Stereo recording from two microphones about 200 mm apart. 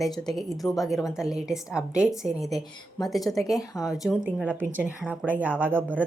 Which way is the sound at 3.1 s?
Centre (ahead or behind).